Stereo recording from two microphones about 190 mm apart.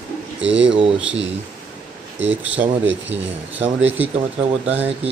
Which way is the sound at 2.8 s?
70° right (ahead or behind).